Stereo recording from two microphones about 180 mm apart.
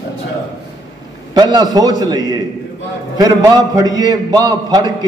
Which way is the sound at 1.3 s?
25° right (ahead or behind).